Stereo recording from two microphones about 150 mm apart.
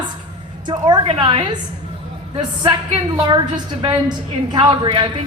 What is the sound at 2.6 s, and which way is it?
A woman's voice, 30° right (ahead or behind).